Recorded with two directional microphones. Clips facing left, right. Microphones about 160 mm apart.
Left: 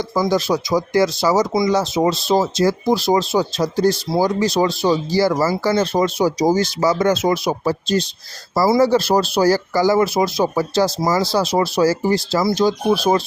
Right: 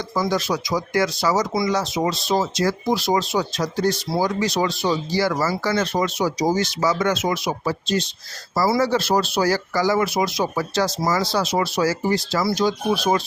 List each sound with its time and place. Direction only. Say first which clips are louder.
0.3 s speech: left 6 dB; 30° left (ahead or behind)
12.4 s speech: left 5 dB; 20° left (ahead or behind)
12.6 s speech: left 4 dB; 35° left (ahead or behind)